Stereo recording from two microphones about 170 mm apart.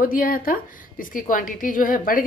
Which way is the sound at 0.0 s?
55° left (ahead or behind).